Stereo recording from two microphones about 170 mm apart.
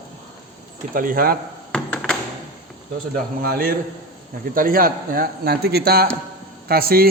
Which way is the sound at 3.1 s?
60° right (ahead or behind).